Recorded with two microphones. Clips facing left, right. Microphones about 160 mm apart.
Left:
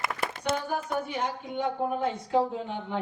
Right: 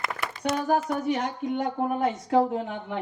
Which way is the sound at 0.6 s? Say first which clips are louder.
Right 6 dB; 90° right.